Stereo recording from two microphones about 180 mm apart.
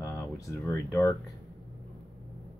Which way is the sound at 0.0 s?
15° left (ahead or behind).